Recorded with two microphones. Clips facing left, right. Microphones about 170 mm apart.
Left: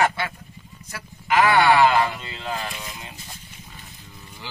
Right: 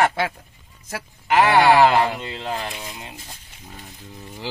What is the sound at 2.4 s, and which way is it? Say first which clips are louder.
Speech: even; 25° right (ahead or behind).